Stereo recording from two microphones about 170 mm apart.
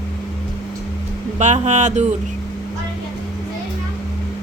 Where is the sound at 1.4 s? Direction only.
40° right (ahead or behind).